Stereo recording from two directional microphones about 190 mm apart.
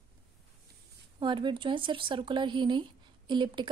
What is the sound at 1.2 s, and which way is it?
Speech, 25° right (ahead or behind).